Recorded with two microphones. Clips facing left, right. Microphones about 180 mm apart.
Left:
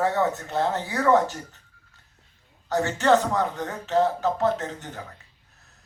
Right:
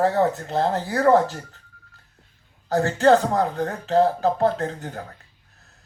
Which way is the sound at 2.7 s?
35° right (ahead or behind).